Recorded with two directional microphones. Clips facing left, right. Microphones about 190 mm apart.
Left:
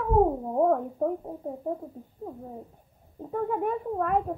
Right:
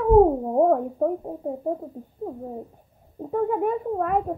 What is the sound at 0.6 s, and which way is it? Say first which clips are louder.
Speech: right 3 dB; 15° right (ahead or behind).